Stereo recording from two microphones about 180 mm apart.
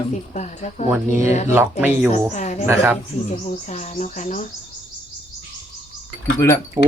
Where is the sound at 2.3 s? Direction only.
40° left (ahead or behind).